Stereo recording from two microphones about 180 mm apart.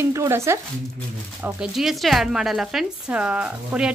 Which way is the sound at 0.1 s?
15° right (ahead or behind).